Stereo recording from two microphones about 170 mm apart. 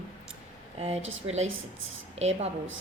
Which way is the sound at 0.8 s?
40° right (ahead or behind).